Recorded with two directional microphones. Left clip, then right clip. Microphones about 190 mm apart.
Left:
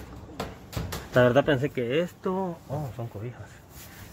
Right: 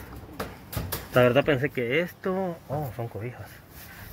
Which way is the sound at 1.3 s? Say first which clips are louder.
Even; 15° left (ahead or behind).